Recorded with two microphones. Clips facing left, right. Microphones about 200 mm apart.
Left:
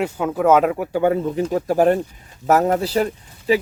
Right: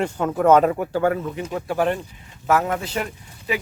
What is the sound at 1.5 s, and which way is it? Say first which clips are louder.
Speech: left 6 dB; 40° left (ahead or behind).